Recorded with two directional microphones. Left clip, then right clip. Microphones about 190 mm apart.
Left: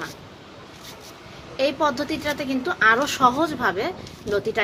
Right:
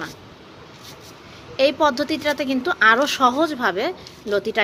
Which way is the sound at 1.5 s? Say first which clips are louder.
Right 4 dB; 40° right (ahead or behind).